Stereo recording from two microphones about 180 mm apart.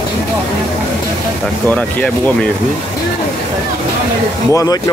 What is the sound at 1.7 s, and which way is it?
Speech, 10° left (ahead or behind).